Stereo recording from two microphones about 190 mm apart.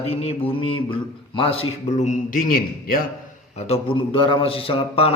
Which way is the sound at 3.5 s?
35° left (ahead or behind).